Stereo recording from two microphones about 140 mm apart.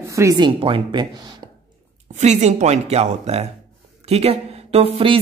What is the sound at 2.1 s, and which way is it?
Speech, 55° right (ahead or behind).